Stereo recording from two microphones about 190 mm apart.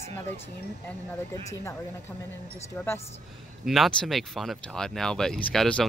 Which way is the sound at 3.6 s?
Centre (ahead or behind).